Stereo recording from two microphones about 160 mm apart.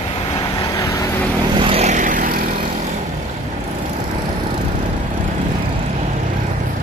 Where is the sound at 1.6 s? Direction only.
35° right (ahead or behind); by 2.7 s 60° right (ahead or behind).